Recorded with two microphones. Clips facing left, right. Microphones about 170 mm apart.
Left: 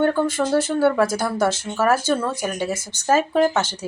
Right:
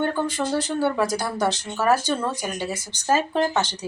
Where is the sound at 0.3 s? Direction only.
15° right (ahead or behind).